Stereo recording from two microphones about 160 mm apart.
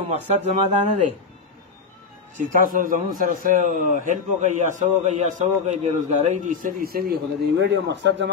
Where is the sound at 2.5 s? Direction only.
60° right (ahead or behind).